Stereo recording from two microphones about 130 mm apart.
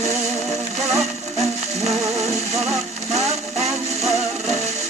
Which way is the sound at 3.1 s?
55° right (ahead or behind).